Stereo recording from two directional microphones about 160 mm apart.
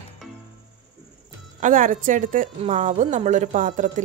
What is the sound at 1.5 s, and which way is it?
Speech, 55° right (ahead or behind).